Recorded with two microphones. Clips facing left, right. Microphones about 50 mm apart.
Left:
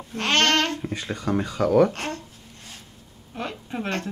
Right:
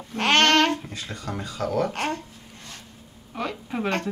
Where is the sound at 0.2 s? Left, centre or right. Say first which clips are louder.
Right 3 dB; right.